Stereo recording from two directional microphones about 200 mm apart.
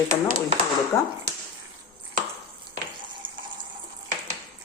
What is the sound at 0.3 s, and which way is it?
Speech, 35° right (ahead or behind).